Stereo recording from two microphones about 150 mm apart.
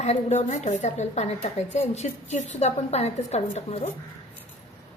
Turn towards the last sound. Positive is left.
turn(degrees=45)  # may be behind; listen again after turning